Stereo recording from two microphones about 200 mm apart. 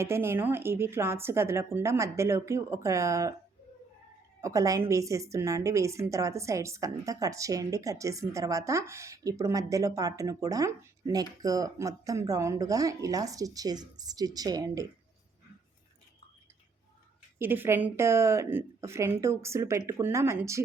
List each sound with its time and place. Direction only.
0.0 s a woman's voice: 10° right (ahead or behind)
4.4 s a woman's voice: 15° right (ahead or behind)
17.3 s a woman's voice: 10° right (ahead or behind)